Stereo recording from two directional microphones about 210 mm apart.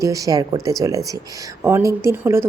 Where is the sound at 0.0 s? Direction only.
15° right (ahead or behind).